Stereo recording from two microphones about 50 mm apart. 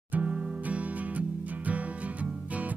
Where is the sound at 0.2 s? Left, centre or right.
Right.